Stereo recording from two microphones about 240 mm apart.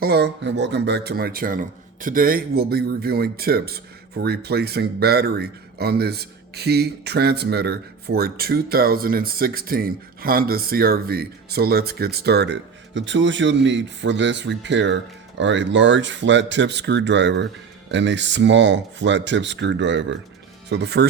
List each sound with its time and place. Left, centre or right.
0.0 s speech: right